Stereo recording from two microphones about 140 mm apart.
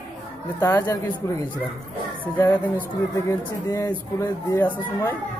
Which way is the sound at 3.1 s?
25° left (ahead or behind).